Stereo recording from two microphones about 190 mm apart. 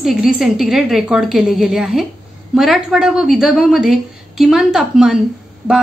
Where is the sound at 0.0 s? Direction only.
Centre (ahead or behind).